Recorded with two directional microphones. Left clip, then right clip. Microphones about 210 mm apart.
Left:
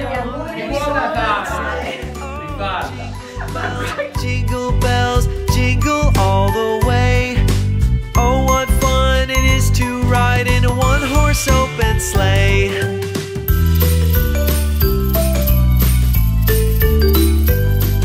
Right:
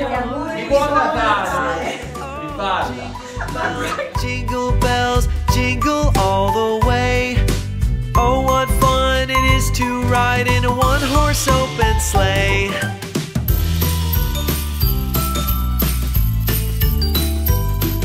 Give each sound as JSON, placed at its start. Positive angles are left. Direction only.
{"t": 4.5, "sound": "music", "side_deg": 0}